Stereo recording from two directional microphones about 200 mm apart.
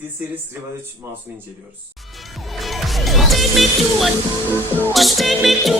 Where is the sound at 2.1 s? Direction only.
Centre (ahead or behind).